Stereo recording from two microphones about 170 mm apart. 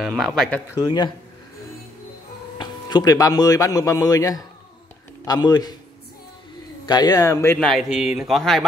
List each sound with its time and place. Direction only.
0.0 s speech: 5° left (ahead or behind)
0.7 s speech: 25° left (ahead or behind)
2.6 s speech: 25° left (ahead or behind)
6.9 s speech: 25° left (ahead or behind)
7.6 s speech: centre (ahead or behind)